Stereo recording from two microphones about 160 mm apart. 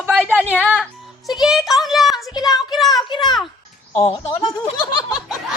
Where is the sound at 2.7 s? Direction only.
Centre (ahead or behind).